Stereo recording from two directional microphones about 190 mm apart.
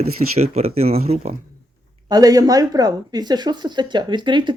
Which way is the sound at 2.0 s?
20° right (ahead or behind).